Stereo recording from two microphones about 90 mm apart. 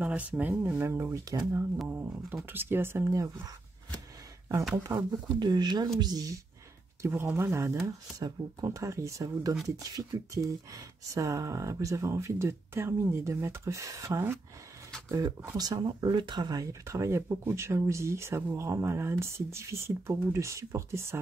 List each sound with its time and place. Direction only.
0.0 s speech: 15° right (ahead or behind)
3.1 s speech: 35° right (ahead or behind)
4.7 s speech: 30° right (ahead or behind)
5.4 s speech: 50° right (ahead or behind)
7.0 s speech: 25° right (ahead or behind)
8.2 s speech: 40° right (ahead or behind)